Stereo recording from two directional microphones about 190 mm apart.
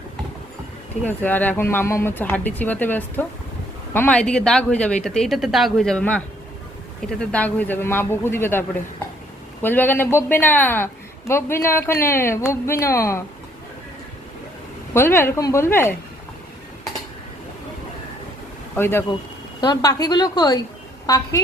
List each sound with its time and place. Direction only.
1.0 s speech: 10° left (ahead or behind)
14.9 s speech: 15° left (ahead or behind)
18.8 s a woman's voice: 10° left (ahead or behind)